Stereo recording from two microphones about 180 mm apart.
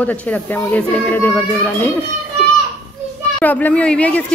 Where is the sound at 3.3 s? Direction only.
10° left (ahead or behind).